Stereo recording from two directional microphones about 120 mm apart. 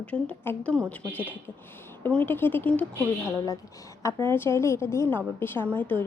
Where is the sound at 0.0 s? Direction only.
10° left (ahead or behind).